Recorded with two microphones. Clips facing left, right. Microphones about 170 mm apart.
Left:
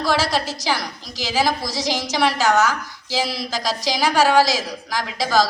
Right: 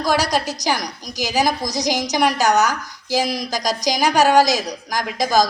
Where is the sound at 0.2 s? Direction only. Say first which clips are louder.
Right 1 dB; 15° right (ahead or behind).